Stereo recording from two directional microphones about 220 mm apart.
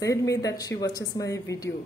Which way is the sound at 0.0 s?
15° left (ahead or behind).